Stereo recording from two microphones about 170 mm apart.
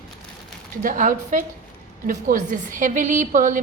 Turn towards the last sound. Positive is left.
turn(degrees=-50)  # may be behind; listen again after turning